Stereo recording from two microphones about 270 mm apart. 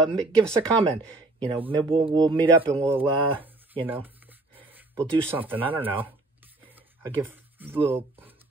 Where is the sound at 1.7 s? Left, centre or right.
Centre.